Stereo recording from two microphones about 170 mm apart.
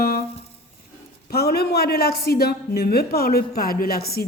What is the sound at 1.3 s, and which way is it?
A woman's voice, 70° left (ahead or behind).